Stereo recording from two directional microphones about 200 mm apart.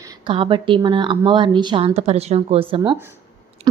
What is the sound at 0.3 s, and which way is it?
A woman's voice, 25° right (ahead or behind).